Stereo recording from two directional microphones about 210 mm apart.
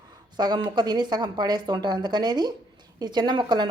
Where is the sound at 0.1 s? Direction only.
20° right (ahead or behind).